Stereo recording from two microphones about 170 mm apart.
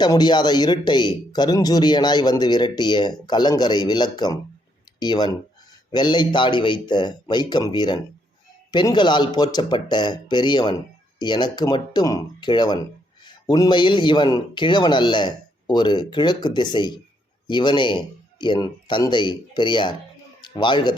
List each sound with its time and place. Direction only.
0.0 s speech: 25° left (ahead or behind)